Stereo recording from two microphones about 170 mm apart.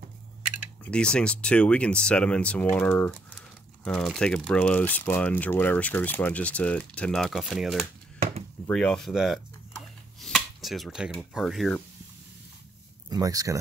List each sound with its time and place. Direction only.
0.8 s speech: 5° left (ahead or behind)
10.2 s a sound: centre (ahead or behind)
11.1 s speech: centre (ahead or behind)
13.1 s speech: 20° right (ahead or behind)